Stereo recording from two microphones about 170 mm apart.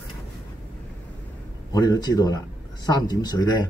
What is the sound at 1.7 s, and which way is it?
Speech, 20° left (ahead or behind).